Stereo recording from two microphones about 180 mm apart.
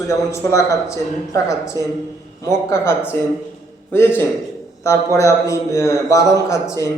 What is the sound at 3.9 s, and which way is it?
A man's voice, 10° left (ahead or behind).